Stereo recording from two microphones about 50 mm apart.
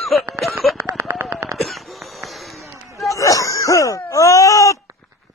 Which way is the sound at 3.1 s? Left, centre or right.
Left.